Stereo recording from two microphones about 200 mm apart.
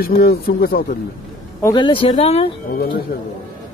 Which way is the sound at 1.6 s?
20° left (ahead or behind).